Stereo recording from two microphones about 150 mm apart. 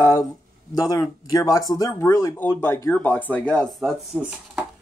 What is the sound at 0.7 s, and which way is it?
Speech, 25° left (ahead or behind).